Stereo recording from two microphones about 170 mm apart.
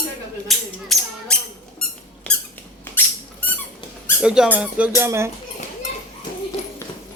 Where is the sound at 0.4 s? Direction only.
Centre (ahead or behind).